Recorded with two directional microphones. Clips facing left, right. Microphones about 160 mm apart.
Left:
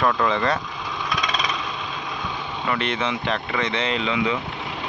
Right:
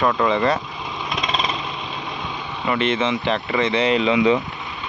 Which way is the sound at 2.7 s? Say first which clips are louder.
Right 5 dB; centre (ahead or behind).